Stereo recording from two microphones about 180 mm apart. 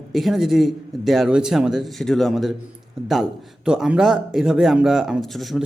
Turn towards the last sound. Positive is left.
turn(degrees=0)  # may be behind; listen again after turning